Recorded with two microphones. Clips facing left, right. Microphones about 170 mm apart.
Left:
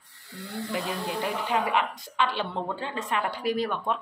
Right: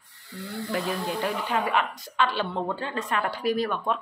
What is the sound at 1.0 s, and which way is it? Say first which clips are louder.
Speech: right 1 dB; 15° left (ahead or behind).